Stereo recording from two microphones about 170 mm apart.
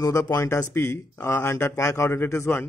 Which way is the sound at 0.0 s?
20° left (ahead or behind).